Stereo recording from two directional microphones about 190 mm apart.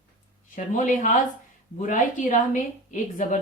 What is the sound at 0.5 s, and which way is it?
Speech, 40° left (ahead or behind).